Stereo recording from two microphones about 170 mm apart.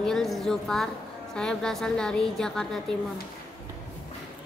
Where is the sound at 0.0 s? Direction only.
Centre (ahead or behind).